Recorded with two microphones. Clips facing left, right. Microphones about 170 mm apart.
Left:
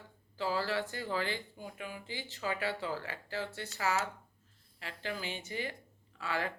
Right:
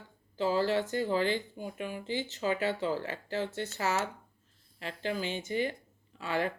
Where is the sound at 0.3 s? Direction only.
20° right (ahead or behind).